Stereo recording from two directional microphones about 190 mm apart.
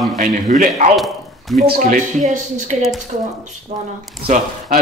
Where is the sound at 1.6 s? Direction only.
50° right (ahead or behind).